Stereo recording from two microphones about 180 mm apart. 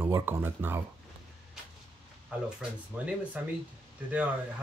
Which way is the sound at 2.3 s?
10° right (ahead or behind).